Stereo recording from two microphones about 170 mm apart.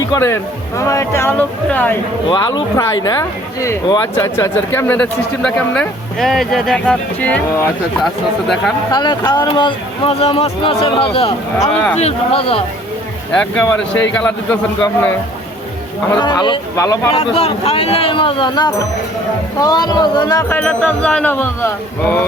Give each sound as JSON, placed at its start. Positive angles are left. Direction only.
{"t": 0.1, "sound": "speech", "side_deg": 15}
{"t": 2.3, "sound": "speech", "side_deg": 25}
{"t": 8.9, "sound": "speech", "side_deg": 25}
{"t": 13.3, "sound": "speech", "side_deg": 10}
{"t": 16.1, "sound": "speech", "side_deg": 25}
{"t": 17.2, "sound": "speech", "side_deg": 35}
{"t": 20.5, "sound": "speech", "side_deg": 5}